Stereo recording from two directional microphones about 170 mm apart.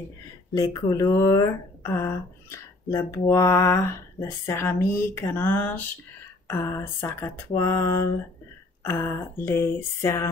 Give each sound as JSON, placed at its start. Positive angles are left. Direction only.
{"t": 0.6, "sound": "speech", "side_deg": 20}